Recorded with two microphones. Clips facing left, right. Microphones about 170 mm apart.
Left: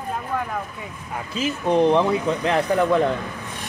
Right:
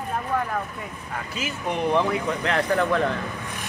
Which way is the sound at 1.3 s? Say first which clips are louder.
Left 9 dB; 25° left (ahead or behind).